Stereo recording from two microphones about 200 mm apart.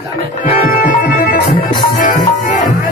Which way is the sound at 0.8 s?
45° left (ahead or behind).